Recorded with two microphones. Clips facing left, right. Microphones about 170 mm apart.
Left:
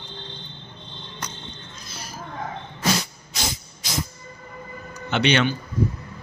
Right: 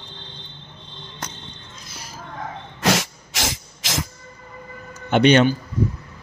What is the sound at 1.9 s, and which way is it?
Music, 20° right (ahead or behind).